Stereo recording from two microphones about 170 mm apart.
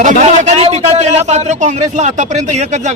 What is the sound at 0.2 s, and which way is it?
A man's voice, 40° right (ahead or behind).